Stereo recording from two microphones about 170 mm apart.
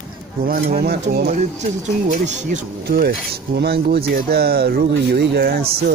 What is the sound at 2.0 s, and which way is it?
Speech, 45° right (ahead or behind).